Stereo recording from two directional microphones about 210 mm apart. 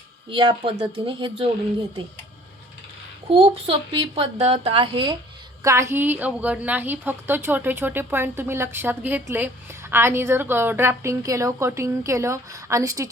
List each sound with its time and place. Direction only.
0.3 s speech: 25° right (ahead or behind)
3.2 s speech: 25° right (ahead or behind)
5.6 s a woman's voice: 15° right (ahead or behind)